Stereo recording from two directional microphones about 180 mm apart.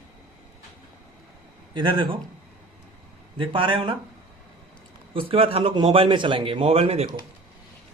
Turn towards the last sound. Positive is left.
turn(degrees=-35)  # may be behind; listen again after turning